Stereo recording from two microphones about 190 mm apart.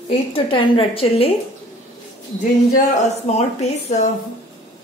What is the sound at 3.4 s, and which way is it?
Speech, 35° left (ahead or behind).